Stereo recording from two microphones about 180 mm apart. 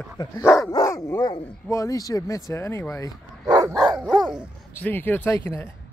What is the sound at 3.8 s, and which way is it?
Dog, centre (ahead or behind).